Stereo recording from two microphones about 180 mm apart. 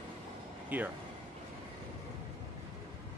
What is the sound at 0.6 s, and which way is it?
Speech, 10° right (ahead or behind).